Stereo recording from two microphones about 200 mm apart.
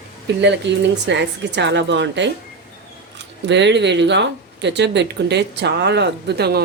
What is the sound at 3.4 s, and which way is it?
A woman's voice, 60° right (ahead or behind).